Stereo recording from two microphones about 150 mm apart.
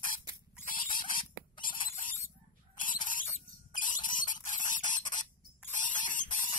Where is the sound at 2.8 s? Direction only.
60° left (ahead or behind).